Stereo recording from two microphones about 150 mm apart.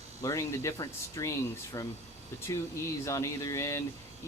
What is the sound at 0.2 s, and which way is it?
Speech, 20° left (ahead or behind).